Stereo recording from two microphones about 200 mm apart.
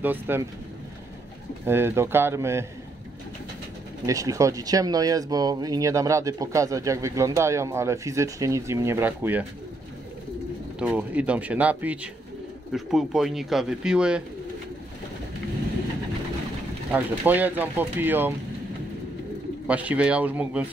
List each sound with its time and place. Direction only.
0.0 s speech: 10° right (ahead or behind)
1.7 s speech: 10° right (ahead or behind)
4.0 s speech: 15° right (ahead or behind)
10.8 s speech: 5° right (ahead or behind)
16.9 s speech: 10° right (ahead or behind)
19.7 s speech: 5° right (ahead or behind)